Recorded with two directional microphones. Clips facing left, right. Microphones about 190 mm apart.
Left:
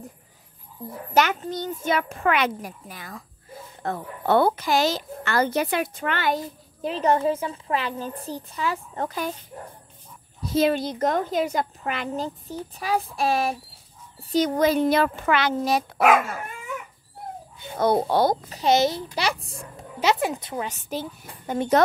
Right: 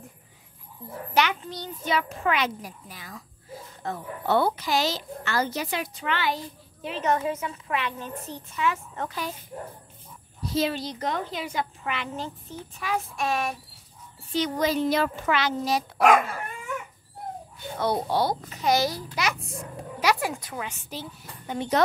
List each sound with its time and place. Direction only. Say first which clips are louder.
0.8 s a sound: left 4 dB; 35° left (ahead or behind)
1.1 s a woman's voice: left 3 dB; 45° left (ahead or behind)
10.5 s a woman's voice: left 5 dB; 50° left (ahead or behind); by 13.6 s 35° left (ahead or behind)
14.3 s a child's voice: left 5 dB; 50° left (ahead or behind)
17.7 s a woman's voice: left 5 dB; 50° left (ahead or behind)
18.6 s a child's voice: left 4 dB; 25° left (ahead or behind)
20.6 s a woman's voice: left 6 dB; 50° left (ahead or behind)